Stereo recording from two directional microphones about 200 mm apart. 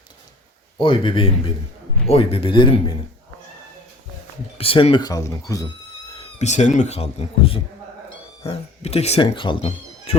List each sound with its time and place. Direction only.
0.8 s speech: 25° left (ahead or behind)
4.5 s speech: 25° left (ahead or behind)
6.1 s speech: 35° left (ahead or behind)